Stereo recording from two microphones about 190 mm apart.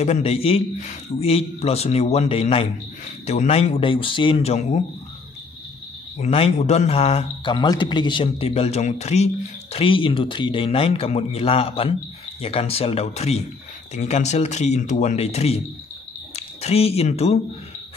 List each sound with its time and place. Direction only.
0.0 s a man's voice: 30° left (ahead or behind)
6.1 s a man's voice: 35° left (ahead or behind)